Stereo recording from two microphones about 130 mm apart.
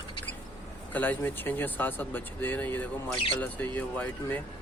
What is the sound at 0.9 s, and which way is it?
Speech, 15° left (ahead or behind).